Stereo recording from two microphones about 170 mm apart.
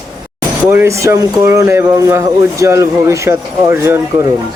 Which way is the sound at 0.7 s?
15° right (ahead or behind).